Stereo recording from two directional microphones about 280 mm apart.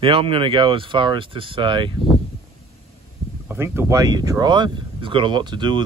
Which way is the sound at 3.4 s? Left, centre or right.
Centre.